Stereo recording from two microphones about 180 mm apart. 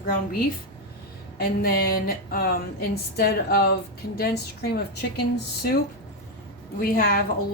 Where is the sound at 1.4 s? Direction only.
55° left (ahead or behind).